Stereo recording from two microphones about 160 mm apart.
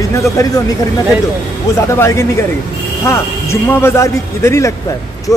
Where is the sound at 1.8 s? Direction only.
15° left (ahead or behind).